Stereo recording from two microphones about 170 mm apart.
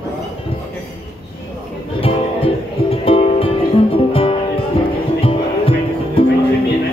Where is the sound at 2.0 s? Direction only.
35° left (ahead or behind).